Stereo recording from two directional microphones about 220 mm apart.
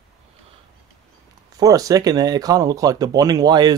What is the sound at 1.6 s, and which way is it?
Speech, 15° right (ahead or behind).